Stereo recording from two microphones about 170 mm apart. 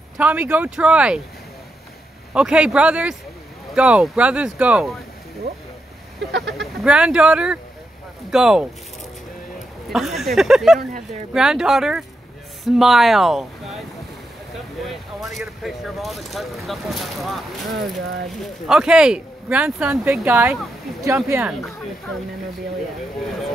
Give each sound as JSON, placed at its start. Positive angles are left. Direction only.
{"t": 0.2, "sound": "speech", "side_deg": -10}
{"t": 2.3, "sound": "speech", "side_deg": -5}
{"t": 6.6, "sound": "speech", "side_deg": -5}
{"t": 9.9, "sound": "speech", "side_deg": 0}
{"t": 14.9, "sound": "speech", "side_deg": 0}
{"t": 18.4, "sound": "speech", "side_deg": -5}